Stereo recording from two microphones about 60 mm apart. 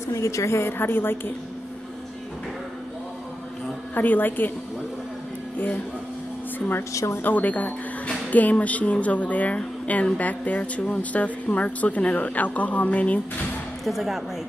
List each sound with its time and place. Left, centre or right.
0.1 s a woman's voice: left
3.9 s a woman's voice: left
6.9 s speech: left
7.2 s speech: left
13.8 s speech: centre